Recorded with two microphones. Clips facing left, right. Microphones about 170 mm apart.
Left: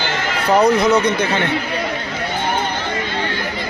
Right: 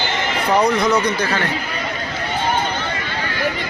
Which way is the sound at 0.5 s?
5° left (ahead or behind).